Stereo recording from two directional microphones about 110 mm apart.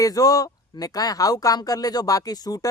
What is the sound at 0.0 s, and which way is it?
Speech, 35° left (ahead or behind).